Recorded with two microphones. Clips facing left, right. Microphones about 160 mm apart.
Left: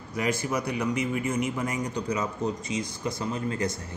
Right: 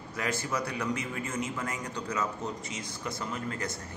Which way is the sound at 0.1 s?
15° left (ahead or behind).